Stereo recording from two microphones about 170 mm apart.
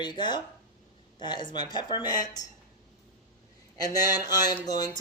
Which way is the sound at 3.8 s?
20° left (ahead or behind).